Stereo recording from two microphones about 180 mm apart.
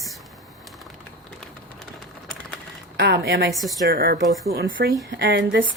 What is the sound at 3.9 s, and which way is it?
Speech, 60° right (ahead or behind).